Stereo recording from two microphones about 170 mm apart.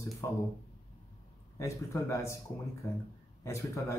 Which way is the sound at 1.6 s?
15° left (ahead or behind).